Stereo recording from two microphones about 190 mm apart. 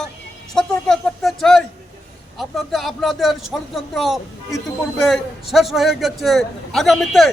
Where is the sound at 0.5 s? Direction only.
Centre (ahead or behind).